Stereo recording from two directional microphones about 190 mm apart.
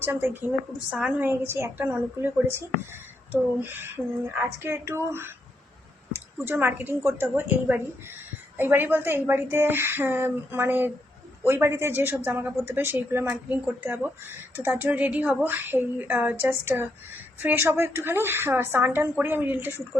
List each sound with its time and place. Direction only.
0.0 s a woman's voice: 10° right (ahead or behind)
6.1 s a woman's voice: 10° right (ahead or behind)